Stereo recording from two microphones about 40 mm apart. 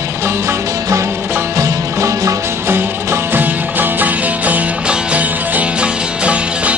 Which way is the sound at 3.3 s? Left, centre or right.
Right.